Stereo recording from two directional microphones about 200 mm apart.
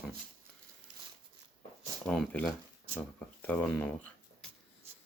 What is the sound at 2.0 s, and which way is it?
Speech, 5° left (ahead or behind).